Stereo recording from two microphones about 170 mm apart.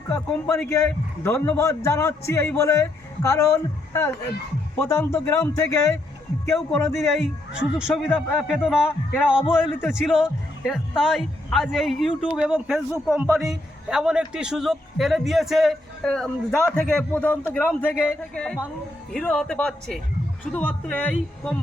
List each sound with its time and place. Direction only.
0.1 s a man's voice: 15° left (ahead or behind)
6.5 s speech: 5° left (ahead or behind)
7.2 s a man's voice: 5° right (ahead or behind)